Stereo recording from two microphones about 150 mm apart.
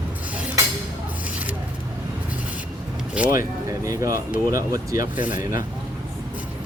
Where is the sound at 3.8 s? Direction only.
20° right (ahead or behind).